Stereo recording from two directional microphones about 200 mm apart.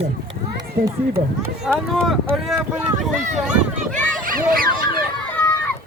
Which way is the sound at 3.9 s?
45° right (ahead or behind).